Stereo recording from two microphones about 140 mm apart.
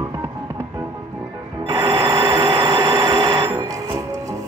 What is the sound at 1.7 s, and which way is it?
Telephone bell ringing, 35° right (ahead or behind).